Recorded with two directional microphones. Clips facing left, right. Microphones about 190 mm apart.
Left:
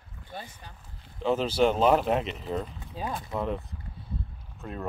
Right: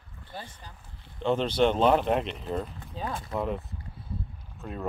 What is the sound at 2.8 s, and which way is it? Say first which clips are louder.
Speech: even; 10° left (ahead or behind).